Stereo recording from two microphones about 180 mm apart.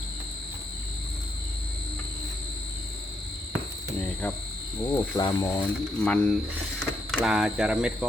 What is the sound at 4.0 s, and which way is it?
Cricket, 10° left (ahead or behind).